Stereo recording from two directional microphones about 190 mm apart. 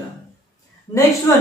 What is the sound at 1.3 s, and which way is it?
Speech, 15° left (ahead or behind).